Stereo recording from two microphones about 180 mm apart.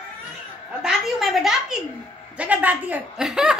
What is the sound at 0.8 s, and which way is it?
A woman's voice, centre (ahead or behind).